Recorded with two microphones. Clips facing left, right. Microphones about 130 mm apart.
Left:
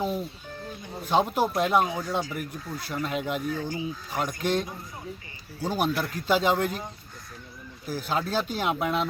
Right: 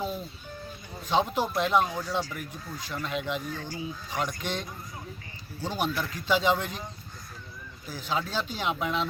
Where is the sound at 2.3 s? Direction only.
10° left (ahead or behind).